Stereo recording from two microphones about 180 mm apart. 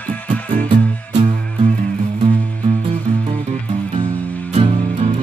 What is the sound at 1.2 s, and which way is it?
Music, 40° right (ahead or behind).